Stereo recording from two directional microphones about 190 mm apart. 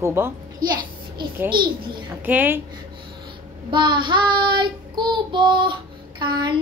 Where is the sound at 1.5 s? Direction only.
25° right (ahead or behind).